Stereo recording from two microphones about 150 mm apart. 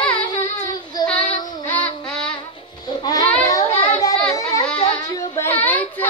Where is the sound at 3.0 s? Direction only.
25° left (ahead or behind).